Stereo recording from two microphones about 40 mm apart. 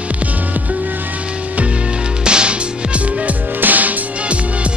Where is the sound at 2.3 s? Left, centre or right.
Right.